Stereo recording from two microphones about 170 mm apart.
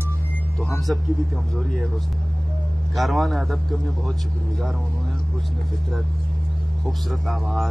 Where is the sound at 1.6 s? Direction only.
Centre (ahead or behind).